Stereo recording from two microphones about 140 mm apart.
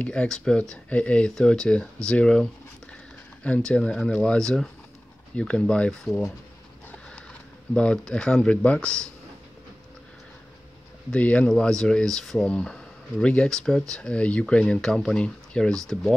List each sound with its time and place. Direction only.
0.0 s speech: 5° left (ahead or behind)
3.4 s speech: 10° left (ahead or behind)
7.7 s speech: 5° left (ahead or behind)
11.1 s speech: 10° left (ahead or behind)